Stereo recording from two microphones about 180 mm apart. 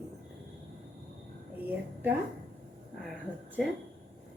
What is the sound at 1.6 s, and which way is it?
A woman's voice, 10° right (ahead or behind).